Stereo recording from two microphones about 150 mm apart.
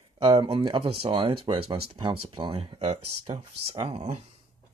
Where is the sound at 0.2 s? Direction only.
35° right (ahead or behind).